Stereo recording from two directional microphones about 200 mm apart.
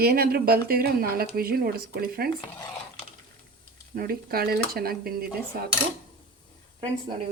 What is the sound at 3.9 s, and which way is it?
Speech, 50° right (ahead or behind).